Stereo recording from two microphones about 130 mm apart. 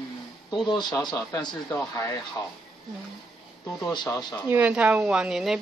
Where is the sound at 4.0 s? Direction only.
30° left (ahead or behind).